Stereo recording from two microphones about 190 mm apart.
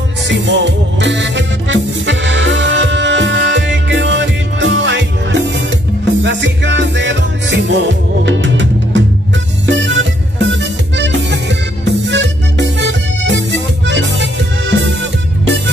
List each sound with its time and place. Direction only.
0.3 s music: 65° right (ahead or behind)